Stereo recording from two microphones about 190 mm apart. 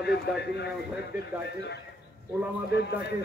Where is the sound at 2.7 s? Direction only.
65° left (ahead or behind).